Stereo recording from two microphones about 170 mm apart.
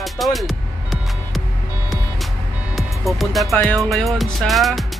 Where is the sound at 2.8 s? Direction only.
Centre (ahead or behind).